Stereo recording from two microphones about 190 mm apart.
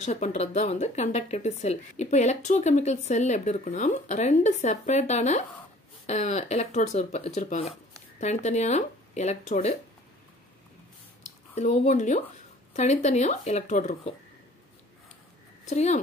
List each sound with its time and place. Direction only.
0.0 s speech: 35° left (ahead or behind)
11.2 s speech: 35° left (ahead or behind)
15.6 s speech: 35° left (ahead or behind)